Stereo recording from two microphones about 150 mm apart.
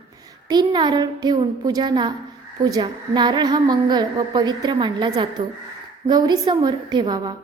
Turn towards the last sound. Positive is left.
turn(degrees=-30)  # may be behind; listen again after turning